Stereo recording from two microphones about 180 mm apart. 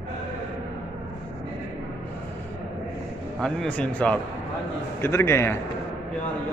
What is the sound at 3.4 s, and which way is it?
A man's voice, 5° left (ahead or behind).